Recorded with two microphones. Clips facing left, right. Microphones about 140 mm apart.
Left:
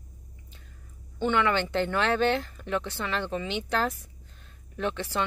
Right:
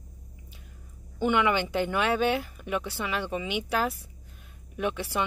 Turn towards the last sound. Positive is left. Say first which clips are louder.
# even
turn(degrees=-10)  # may be behind; listen again after turning